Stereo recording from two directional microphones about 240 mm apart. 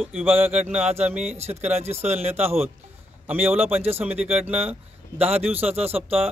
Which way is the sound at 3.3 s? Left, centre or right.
Centre.